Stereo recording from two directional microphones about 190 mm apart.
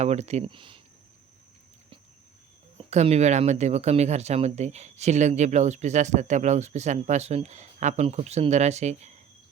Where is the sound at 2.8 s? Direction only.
35° right (ahead or behind).